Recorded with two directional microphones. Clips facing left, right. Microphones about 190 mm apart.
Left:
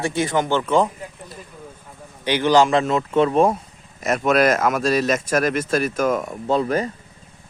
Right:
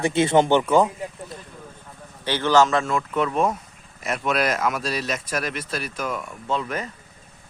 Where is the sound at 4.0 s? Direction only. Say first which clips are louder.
Left 6 dB; 45° left (ahead or behind).